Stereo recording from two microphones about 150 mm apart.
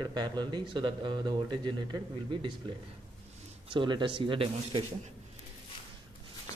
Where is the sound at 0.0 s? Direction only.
30° right (ahead or behind).